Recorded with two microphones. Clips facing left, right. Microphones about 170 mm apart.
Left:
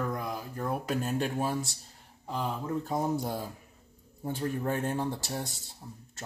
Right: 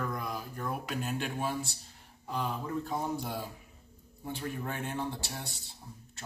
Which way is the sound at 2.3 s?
30° left (ahead or behind).